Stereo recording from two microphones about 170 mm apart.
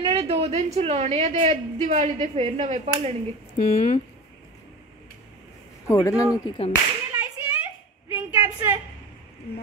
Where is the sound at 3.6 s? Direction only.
50° left (ahead or behind).